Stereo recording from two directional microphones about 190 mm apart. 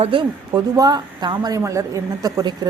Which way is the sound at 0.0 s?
25° right (ahead or behind).